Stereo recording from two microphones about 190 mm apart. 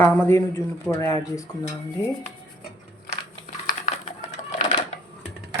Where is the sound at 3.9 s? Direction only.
35° left (ahead or behind).